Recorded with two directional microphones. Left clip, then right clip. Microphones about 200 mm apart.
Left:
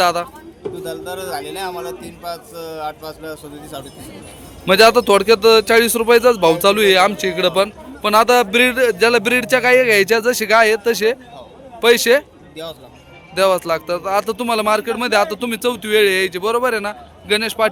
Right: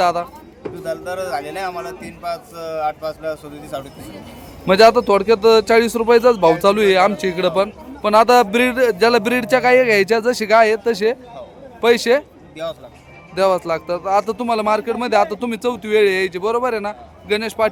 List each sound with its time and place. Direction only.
0.0 s speech: 5° right (ahead or behind)
12.6 s speech: centre (ahead or behind)
13.3 s speech: 10° right (ahead or behind)